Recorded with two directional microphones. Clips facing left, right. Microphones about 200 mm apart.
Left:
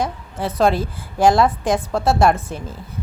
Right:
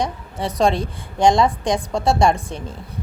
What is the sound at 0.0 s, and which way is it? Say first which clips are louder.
A woman's voice: even; 5° left (ahead or behind).